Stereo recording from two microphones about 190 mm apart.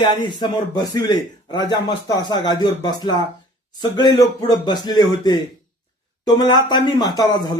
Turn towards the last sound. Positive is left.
turn(degrees=20)  # may be behind; listen again after turning